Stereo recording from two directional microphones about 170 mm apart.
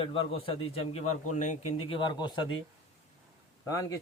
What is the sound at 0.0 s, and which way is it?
A man's voice, 30° left (ahead or behind).